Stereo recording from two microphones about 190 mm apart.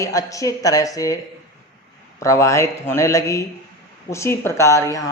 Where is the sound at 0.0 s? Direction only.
15° left (ahead or behind).